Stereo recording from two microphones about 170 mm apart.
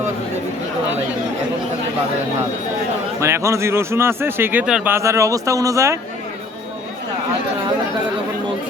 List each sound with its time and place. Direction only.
3.2 s speech: 15° right (ahead or behind)